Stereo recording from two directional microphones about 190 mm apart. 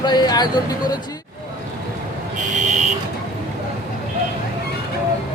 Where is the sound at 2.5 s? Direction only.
40° right (ahead or behind).